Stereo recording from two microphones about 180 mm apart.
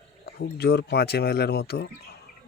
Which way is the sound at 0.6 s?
65° left (ahead or behind).